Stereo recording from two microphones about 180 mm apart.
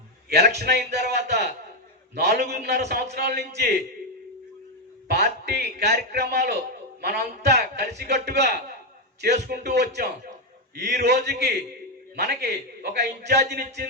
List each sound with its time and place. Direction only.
0.3 s a man's voice: 60° right (ahead or behind)
5.0 s a man's voice: 65° right (ahead or behind)